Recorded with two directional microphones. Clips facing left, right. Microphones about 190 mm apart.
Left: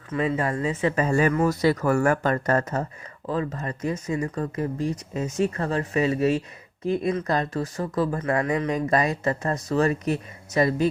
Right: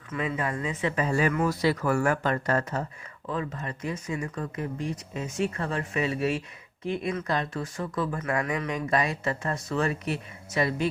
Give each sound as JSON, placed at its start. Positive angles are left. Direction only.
{"t": 0.1, "sound": "speech", "side_deg": 35}